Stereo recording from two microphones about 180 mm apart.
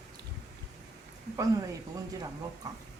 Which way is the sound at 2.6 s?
20° right (ahead or behind).